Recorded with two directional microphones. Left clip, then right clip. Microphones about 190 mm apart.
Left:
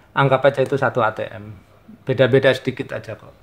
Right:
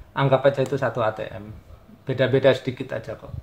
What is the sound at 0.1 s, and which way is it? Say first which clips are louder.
Speech: left 4 dB; 45° left (ahead or behind).